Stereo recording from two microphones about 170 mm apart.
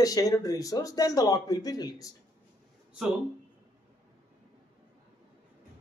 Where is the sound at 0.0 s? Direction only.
20° left (ahead or behind).